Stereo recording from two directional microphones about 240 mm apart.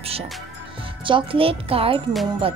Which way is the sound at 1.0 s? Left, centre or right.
Right.